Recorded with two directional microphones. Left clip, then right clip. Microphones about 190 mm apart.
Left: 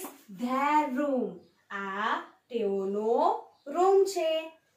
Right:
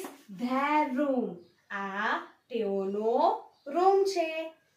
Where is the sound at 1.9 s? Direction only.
25° right (ahead or behind).